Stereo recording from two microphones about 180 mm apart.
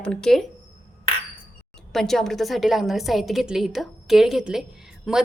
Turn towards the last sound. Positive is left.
turn(degrees=0)  # may be behind; listen again after turning